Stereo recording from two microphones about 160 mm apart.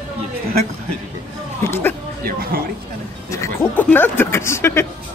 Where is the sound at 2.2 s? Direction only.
70° right (ahead or behind).